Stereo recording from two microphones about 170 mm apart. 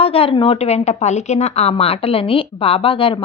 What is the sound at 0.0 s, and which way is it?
A woman's voice, 35° left (ahead or behind).